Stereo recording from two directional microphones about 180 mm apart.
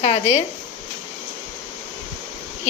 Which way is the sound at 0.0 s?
40° left (ahead or behind).